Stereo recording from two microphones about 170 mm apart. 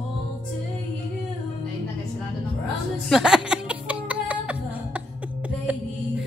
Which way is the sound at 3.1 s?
5° right (ahead or behind).